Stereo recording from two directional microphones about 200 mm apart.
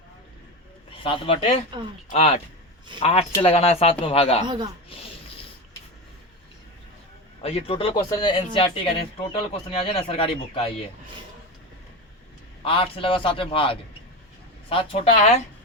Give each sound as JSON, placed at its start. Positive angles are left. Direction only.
{"t": 0.9, "sound": "speech", "side_deg": 25}
{"t": 4.4, "sound": "speech", "side_deg": -20}
{"t": 7.4, "sound": "speech", "side_deg": 30}
{"t": 12.6, "sound": "speech", "side_deg": 25}